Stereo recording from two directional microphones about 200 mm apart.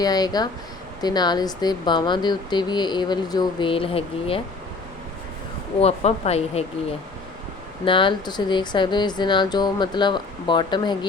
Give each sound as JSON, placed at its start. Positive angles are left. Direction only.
{"t": 0.0, "sound": "speech", "side_deg": 20}
{"t": 5.8, "sound": "speech", "side_deg": 30}
{"t": 7.9, "sound": "speech", "side_deg": 25}